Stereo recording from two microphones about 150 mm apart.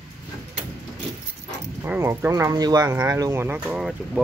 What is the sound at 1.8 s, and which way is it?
Speech, 15° right (ahead or behind).